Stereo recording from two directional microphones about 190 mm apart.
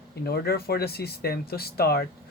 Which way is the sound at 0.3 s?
55° left (ahead or behind).